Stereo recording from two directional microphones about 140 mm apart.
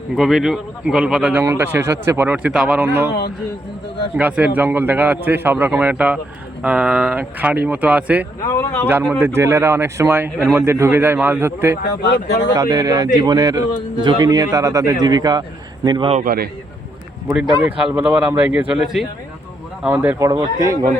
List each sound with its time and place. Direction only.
0.2 s a man's voice: centre (ahead or behind)
4.2 s a man's voice: 10° right (ahead or behind)
8.4 s speech: 20° left (ahead or behind)
8.9 s a man's voice: 15° right (ahead or behind)
16.2 s a man's voice: 90° right
17.2 s a man's voice: 10° right (ahead or behind)
20.3 s speech: 30° right (ahead or behind)